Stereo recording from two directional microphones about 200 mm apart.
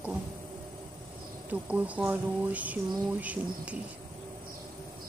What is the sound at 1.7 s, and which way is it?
Speech, 5° right (ahead or behind).